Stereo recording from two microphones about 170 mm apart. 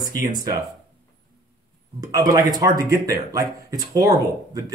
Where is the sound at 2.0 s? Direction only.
20° right (ahead or behind).